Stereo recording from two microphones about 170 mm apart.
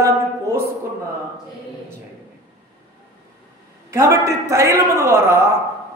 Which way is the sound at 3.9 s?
15° right (ahead or behind).